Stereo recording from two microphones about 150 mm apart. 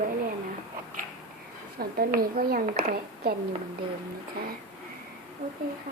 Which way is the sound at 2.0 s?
75° right (ahead or behind).